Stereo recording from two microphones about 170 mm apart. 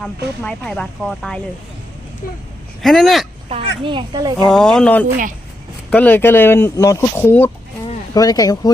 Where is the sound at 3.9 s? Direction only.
25° right (ahead or behind).